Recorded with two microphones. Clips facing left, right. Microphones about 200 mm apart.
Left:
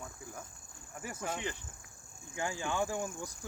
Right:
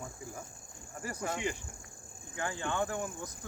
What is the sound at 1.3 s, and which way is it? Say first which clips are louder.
Speech: right 3 dB; 10° right (ahead or behind).